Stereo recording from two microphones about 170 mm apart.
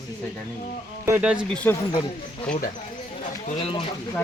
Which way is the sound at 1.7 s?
15° left (ahead or behind).